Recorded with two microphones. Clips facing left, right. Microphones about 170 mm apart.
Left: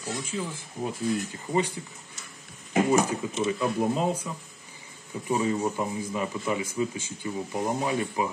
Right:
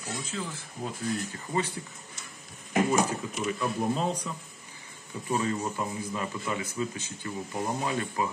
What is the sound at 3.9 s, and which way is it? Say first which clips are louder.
Speech: left 3 dB; 10° left (ahead or behind).